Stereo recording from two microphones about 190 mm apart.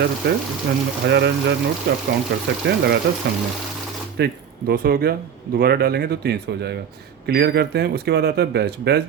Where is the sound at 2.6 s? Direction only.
60° right (ahead or behind).